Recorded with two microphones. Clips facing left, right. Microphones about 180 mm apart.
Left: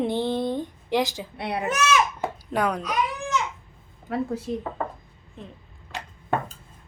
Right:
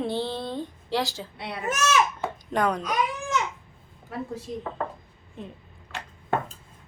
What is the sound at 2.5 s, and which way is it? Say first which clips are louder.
Speech: even; 10° left (ahead or behind).